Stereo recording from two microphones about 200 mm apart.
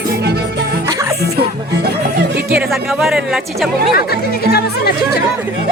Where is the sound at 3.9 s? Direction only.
50° left (ahead or behind).